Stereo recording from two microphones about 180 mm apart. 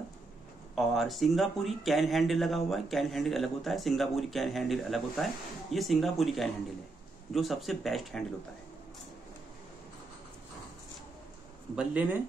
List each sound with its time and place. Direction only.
0.7 s speech: centre (ahead or behind)
11.7 s speech: 10° right (ahead or behind)